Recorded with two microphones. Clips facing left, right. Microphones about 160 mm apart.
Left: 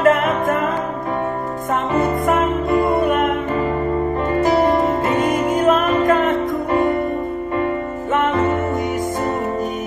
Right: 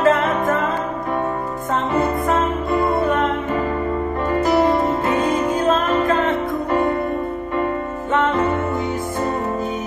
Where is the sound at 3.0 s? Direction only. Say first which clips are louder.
Left 2 dB; 15° left (ahead or behind).